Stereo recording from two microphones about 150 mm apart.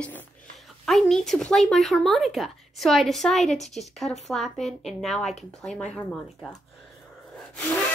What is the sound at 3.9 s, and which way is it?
Speech, centre (ahead or behind).